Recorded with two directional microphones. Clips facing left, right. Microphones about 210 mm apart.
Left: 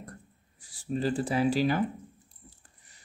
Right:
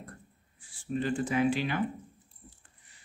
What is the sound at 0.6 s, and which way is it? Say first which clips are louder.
Speech: left 2 dB; 40° left (ahead or behind).